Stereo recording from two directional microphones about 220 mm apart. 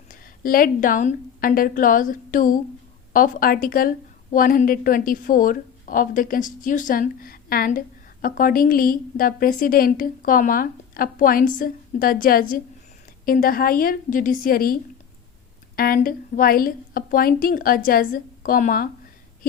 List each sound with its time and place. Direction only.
0.1 s a woman's voice: 40° left (ahead or behind)